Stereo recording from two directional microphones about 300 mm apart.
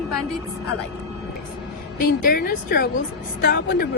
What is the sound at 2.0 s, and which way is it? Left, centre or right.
A woman's voice, left.